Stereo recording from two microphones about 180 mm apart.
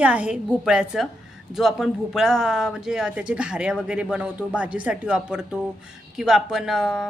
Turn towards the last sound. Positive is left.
turn(degrees=0)  # may be behind; listen again after turning